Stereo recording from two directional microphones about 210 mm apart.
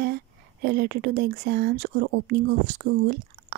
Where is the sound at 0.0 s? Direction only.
45° right (ahead or behind).